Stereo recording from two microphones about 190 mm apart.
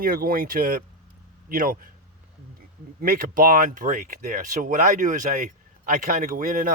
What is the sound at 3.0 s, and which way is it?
Speech, 45° right (ahead or behind).